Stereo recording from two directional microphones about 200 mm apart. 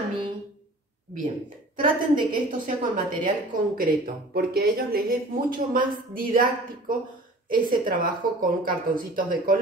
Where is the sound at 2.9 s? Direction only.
40° right (ahead or behind).